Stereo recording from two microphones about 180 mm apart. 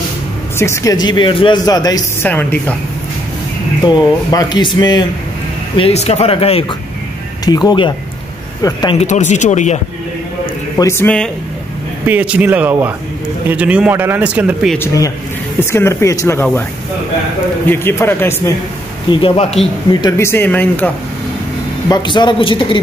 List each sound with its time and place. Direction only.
0.6 s speech: 15° left (ahead or behind)
2.2 s speech: 10° left (ahead or behind)
3.8 s speech: 20° left (ahead or behind)
5.8 s speech: 35° left (ahead or behind)
7.4 s speech: 20° left (ahead or behind)
8.9 s speech: 40° left (ahead or behind)
10.8 s speech: 15° left (ahead or behind)
12.1 s speech: 10° right (ahead or behind)
14.8 s speech: 20° left (ahead or behind)
17.6 s speech: 10° left (ahead or behind)
19.0 s speech: 30° left (ahead or behind); by 20.9 s 10° left (ahead or behind)
21.8 s speech: 25° left (ahead or behind)